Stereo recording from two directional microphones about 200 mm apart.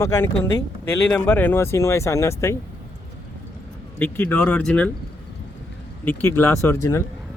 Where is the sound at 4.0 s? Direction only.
10° left (ahead or behind).